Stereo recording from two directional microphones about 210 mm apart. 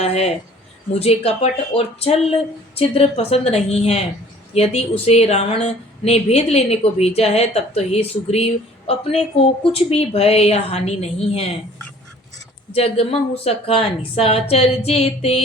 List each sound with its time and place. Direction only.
0.0 s a sound: 30° left (ahead or behind)
0.9 s speech: 30° left (ahead or behind)
12.7 s speech: 30° left (ahead or behind)